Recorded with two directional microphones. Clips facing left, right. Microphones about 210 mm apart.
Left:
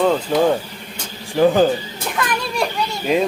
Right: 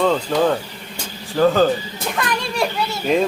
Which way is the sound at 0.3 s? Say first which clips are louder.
Left 1 dB; 15° left (ahead or behind).